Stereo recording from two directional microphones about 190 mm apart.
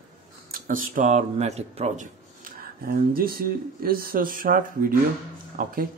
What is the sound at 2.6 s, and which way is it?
Speech, 50° right (ahead or behind).